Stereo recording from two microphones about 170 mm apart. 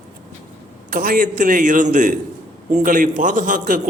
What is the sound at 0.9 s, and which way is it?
A man's voice, 55° right (ahead or behind).